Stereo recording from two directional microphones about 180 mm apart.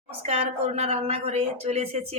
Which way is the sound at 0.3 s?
35° right (ahead or behind).